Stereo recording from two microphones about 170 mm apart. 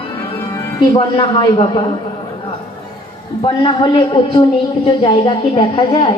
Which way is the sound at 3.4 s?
30° left (ahead or behind).